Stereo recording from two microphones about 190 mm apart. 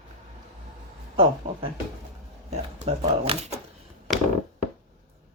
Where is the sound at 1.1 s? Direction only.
30° right (ahead or behind).